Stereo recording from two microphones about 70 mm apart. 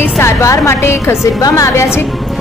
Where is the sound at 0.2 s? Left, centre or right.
Left.